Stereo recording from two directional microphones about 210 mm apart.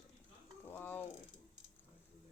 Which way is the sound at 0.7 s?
10° left (ahead or behind).